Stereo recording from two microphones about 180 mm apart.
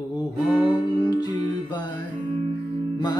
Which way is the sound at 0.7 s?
25° left (ahead or behind).